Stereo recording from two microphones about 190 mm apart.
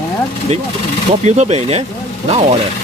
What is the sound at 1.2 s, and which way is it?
Speech, 35° right (ahead or behind).